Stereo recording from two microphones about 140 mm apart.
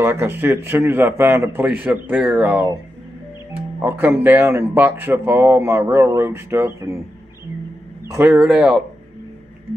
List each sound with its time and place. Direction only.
0.0 s speech: 15° right (ahead or behind)
3.8 s speech: 15° right (ahead or behind)
8.1 s speech: 15° right (ahead or behind)